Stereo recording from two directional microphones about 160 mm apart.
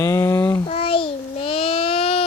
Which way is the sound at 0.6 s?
35° left (ahead or behind).